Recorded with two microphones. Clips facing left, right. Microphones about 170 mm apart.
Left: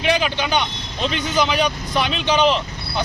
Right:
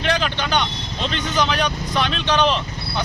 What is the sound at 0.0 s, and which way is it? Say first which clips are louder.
Speech: left 2 dB; 10° left (ahead or behind).